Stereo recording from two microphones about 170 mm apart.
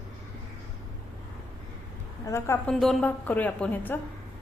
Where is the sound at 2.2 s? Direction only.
15° left (ahead or behind).